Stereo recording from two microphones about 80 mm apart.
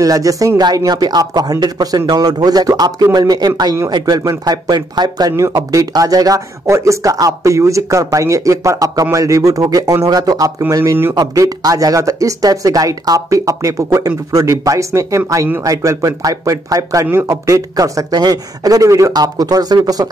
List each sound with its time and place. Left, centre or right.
0.0 s a man's voice: right
5.3 s speech: right